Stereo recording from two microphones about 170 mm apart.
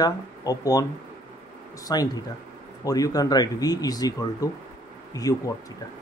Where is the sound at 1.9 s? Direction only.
20° left (ahead or behind).